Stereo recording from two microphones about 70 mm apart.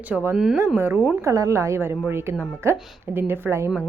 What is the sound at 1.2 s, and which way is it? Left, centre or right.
A woman's voice, right.